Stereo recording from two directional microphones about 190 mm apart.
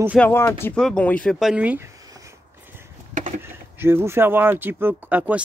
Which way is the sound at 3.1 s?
40° right (ahead or behind).